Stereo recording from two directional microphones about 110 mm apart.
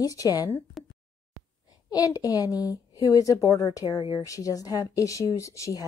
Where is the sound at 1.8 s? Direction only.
35° left (ahead or behind).